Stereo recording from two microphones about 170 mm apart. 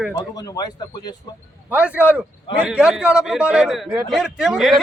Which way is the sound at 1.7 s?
10° right (ahead or behind).